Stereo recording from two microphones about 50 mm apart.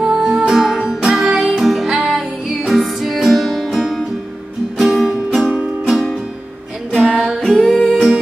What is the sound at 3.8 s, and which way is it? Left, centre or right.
Music, centre.